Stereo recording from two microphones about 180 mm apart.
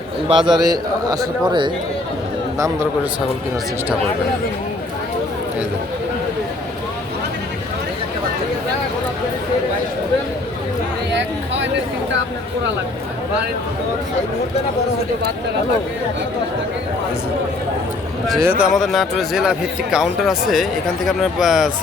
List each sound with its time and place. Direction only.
0.3 s a man's voice: 25° right (ahead or behind)
11.1 s a sound: 90° right
18.6 s speech: centre (ahead or behind)